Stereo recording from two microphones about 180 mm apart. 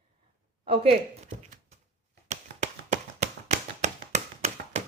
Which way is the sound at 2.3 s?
45° right (ahead or behind).